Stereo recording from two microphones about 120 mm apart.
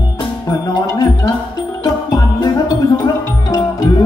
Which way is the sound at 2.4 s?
35° left (ahead or behind).